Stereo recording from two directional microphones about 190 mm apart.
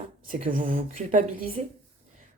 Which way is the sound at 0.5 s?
45° right (ahead or behind).